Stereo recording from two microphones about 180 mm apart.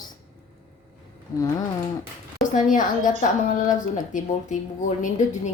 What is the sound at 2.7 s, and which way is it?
A woman's voice, 45° left (ahead or behind).